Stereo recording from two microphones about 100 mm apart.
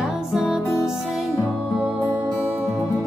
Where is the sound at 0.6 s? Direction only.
30° left (ahead or behind).